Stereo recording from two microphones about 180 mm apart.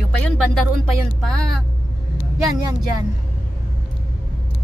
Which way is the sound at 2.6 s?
20° right (ahead or behind).